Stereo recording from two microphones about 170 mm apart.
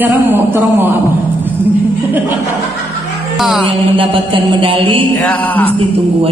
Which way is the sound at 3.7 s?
30° right (ahead or behind).